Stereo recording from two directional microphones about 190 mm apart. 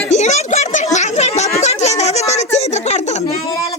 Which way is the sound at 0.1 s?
35° left (ahead or behind).